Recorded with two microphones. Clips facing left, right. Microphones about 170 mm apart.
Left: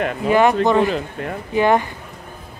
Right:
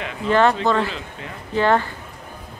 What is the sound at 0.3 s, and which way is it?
Speech, 15° left (ahead or behind).